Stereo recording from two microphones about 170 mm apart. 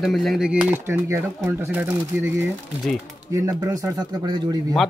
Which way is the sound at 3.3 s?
20° right (ahead or behind).